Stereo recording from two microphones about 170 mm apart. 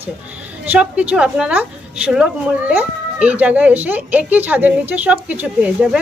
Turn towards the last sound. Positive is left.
turn(degrees=-5)  # may be behind; listen again after turning